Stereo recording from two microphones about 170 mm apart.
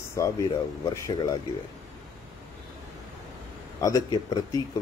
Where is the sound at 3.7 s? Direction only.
20° left (ahead or behind).